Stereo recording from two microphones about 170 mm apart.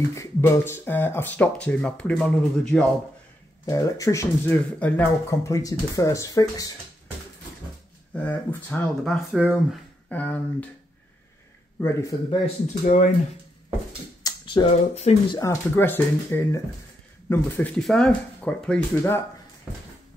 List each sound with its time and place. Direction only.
0.1 s speech: 15° left (ahead or behind)
3.6 s speech: 20° left (ahead or behind)
8.1 s speech: 10° left (ahead or behind)
9.4 s speech: 10° right (ahead or behind)
10.0 s speech: 10° left (ahead or behind)
11.8 s speech: 15° left (ahead or behind)
12.8 s speech: 45° left (ahead or behind)
14.2 s a sound: 30° left (ahead or behind)
14.7 s speech: 40° left (ahead or behind)
15.3 s speech: 15° left (ahead or behind)